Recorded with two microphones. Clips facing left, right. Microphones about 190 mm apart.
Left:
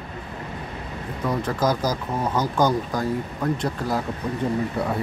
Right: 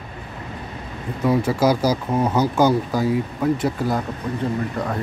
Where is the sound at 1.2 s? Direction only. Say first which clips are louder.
Right 5 dB; 10° right (ahead or behind).